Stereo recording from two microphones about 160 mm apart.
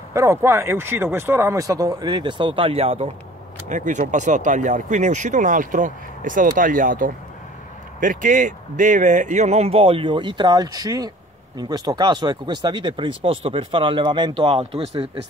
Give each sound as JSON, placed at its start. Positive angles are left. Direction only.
{"t": 0.1, "sound": "speech", "side_deg": -20}
{"t": 3.6, "sound": "speech", "side_deg": -50}